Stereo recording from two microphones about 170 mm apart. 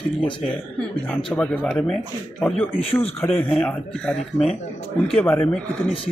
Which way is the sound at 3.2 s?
5° left (ahead or behind).